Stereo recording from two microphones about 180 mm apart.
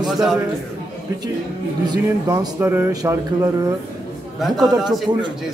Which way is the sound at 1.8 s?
20° right (ahead or behind).